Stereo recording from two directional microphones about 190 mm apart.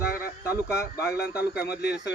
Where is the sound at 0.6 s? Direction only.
15° left (ahead or behind).